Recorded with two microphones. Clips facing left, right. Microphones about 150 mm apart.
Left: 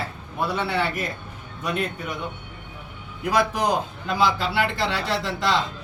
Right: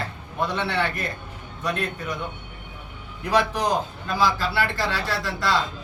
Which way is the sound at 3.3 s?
10° left (ahead or behind).